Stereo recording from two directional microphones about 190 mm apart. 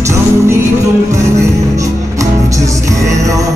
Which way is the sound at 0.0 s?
15° right (ahead or behind).